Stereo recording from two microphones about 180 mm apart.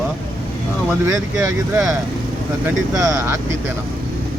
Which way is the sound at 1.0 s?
15° right (ahead or behind).